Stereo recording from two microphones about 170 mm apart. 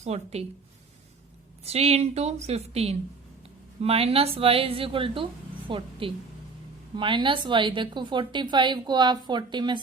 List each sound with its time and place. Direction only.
0.0 s speech: 40° right (ahead or behind)
1.6 s a woman's voice: 35° right (ahead or behind)